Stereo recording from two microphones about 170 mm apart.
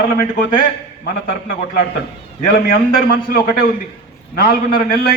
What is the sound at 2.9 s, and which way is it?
A man's voice, 55° left (ahead or behind).